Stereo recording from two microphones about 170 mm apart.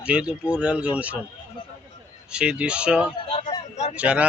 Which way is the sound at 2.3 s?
5° right (ahead or behind).